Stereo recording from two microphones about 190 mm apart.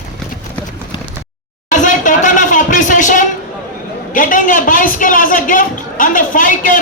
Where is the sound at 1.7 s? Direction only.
40° left (ahead or behind).